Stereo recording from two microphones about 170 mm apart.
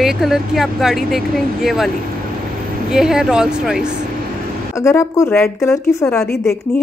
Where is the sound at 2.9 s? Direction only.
5° right (ahead or behind).